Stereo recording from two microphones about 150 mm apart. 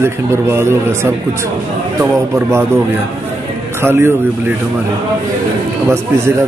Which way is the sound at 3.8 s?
15° right (ahead or behind).